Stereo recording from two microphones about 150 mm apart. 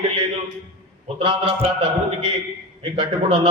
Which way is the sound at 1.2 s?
40° right (ahead or behind).